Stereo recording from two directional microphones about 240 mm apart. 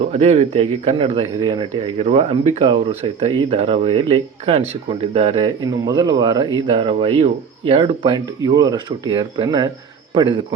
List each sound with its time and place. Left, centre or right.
0.0 s speech: right